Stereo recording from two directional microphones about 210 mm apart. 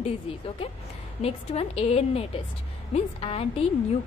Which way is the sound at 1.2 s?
30° left (ahead or behind).